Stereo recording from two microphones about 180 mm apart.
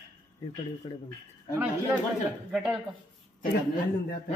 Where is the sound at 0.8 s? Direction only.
30° left (ahead or behind).